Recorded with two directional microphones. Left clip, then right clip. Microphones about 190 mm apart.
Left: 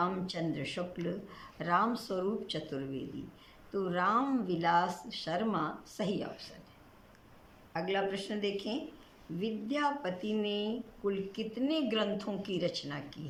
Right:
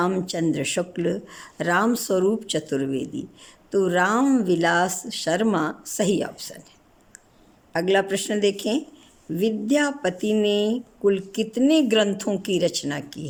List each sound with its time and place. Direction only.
0.0 s speech: 55° right (ahead or behind)
7.7 s speech: 55° right (ahead or behind)